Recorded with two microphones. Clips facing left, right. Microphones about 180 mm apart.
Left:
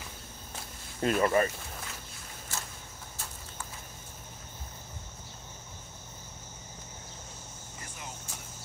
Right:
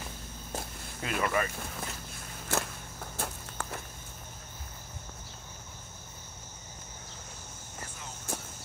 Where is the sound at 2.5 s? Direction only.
60° right (ahead or behind).